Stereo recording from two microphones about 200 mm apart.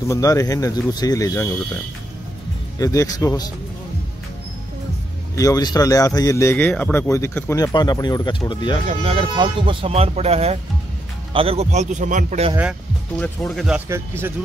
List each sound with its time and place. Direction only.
0.1 s speech: 15° left (ahead or behind)
2.8 s speech: 15° left (ahead or behind)
5.3 s speech: 15° left (ahead or behind)
8.8 s a man's voice: 30° right (ahead or behind)
13.2 s speech: centre (ahead or behind)